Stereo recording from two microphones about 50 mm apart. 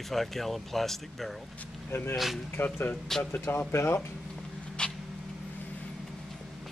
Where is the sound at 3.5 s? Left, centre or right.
Left.